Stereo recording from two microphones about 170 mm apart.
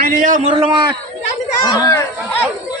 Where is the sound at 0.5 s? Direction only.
35° right (ahead or behind).